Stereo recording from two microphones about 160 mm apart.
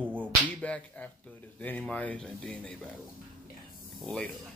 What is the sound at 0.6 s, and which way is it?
Whip, 10° left (ahead or behind).